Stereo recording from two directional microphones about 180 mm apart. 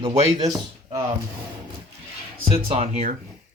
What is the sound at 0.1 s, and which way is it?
Speech, 35° right (ahead or behind).